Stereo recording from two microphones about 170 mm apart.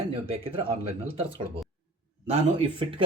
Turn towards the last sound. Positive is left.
turn(degrees=-30)  # may be behind; listen again after turning